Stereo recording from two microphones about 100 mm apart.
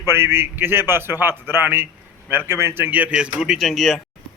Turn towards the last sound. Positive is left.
turn(degrees=0)  # may be behind; listen again after turning